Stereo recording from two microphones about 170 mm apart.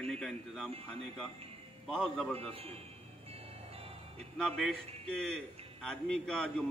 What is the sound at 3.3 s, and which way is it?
Music, 35° right (ahead or behind).